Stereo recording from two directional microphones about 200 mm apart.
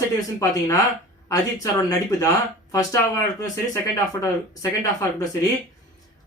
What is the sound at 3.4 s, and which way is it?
Speech, 15° left (ahead or behind).